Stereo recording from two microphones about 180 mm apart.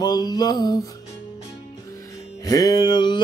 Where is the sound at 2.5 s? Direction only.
20° left (ahead or behind).